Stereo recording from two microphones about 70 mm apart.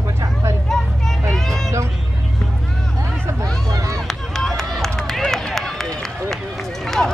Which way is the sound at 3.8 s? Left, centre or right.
Right.